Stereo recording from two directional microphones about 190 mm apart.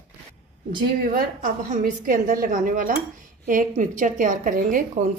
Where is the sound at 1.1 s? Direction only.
45° right (ahead or behind).